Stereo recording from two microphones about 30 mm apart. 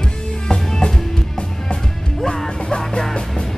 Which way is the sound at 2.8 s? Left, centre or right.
Centre.